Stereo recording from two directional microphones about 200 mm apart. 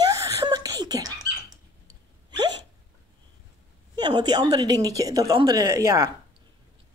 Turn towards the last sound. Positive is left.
turn(degrees=-15)  # may be behind; listen again after turning